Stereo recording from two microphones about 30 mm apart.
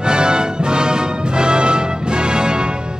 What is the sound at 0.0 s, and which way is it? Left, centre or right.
Music, right.